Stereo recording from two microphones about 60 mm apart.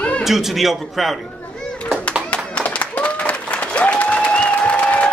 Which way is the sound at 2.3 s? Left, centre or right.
Centre.